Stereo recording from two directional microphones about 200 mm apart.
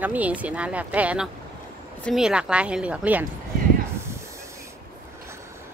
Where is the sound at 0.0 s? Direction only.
10° right (ahead or behind).